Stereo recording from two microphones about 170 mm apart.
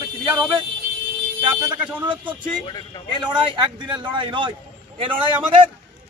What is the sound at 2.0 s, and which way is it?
Speech, 30° right (ahead or behind).